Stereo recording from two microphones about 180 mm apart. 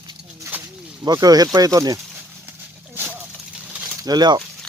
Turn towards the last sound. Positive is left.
turn(degrees=-20)  # may be behind; listen again after turning